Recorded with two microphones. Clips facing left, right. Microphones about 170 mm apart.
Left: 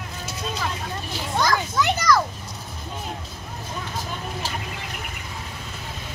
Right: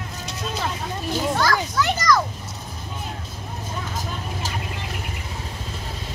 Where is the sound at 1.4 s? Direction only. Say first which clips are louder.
Even; 20° left (ahead or behind).